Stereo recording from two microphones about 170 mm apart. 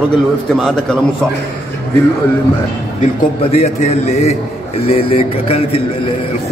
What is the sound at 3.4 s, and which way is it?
A man's voice, 35° left (ahead or behind).